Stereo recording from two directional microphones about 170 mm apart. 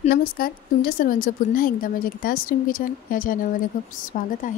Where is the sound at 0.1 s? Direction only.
60° left (ahead or behind).